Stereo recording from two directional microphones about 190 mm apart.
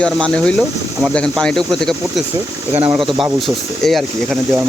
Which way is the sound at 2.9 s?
25° right (ahead or behind).